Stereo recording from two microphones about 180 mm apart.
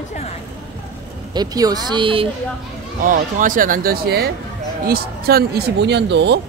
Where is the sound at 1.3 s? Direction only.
20° right (ahead or behind).